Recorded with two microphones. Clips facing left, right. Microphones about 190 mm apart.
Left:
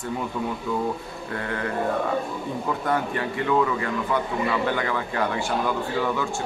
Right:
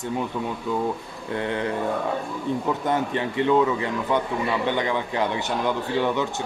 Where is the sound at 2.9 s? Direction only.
20° right (ahead or behind).